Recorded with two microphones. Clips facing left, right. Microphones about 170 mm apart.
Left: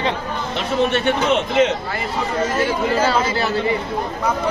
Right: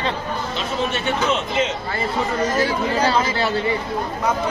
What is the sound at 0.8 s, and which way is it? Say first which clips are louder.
Speech: left 5 dB; 65° left (ahead or behind).